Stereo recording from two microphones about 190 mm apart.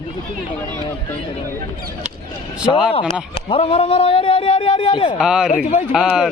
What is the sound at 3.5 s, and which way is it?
A man's voice, 30° left (ahead or behind).